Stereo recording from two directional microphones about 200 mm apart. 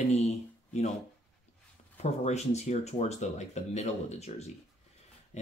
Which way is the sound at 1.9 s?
35° left (ahead or behind).